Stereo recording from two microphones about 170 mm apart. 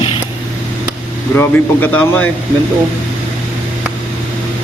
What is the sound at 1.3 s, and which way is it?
Speech, 10° left (ahead or behind).